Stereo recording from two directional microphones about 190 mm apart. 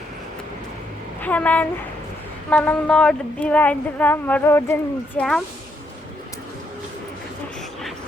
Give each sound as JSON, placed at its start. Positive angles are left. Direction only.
{"t": 1.2, "sound": "a woman's voice", "side_deg": 10}